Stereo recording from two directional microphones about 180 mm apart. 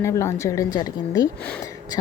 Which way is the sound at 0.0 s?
15° left (ahead or behind).